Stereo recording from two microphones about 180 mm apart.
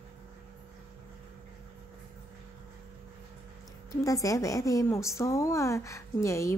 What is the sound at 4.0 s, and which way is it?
A woman's voice, 20° left (ahead or behind).